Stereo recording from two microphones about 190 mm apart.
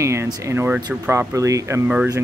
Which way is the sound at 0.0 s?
15° right (ahead or behind).